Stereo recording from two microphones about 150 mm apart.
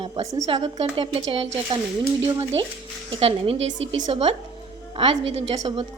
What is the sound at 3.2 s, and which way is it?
A woman's voice, 40° right (ahead or behind).